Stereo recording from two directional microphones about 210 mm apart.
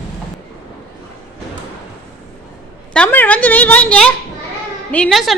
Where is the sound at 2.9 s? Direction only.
5° left (ahead or behind).